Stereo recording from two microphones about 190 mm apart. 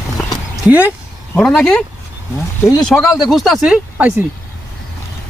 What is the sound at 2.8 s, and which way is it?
Speech, centre (ahead or behind).